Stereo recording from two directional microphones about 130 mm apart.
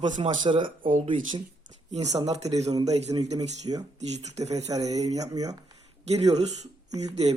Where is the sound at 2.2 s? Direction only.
55° right (ahead or behind).